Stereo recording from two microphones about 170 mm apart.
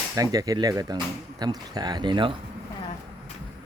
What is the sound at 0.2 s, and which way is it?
Speech, 20° right (ahead or behind).